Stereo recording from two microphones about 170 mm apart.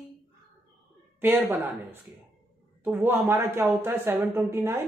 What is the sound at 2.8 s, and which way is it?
A woman's voice, 10° right (ahead or behind).